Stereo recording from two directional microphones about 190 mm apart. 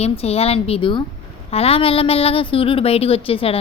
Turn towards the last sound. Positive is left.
turn(degrees=30)  # may be behind; listen again after turning